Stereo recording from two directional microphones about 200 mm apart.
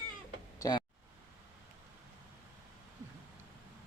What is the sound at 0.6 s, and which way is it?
Speech, 15° left (ahead or behind).